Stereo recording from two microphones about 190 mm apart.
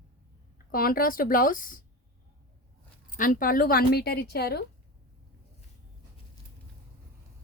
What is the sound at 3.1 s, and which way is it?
Speech, 45° left (ahead or behind).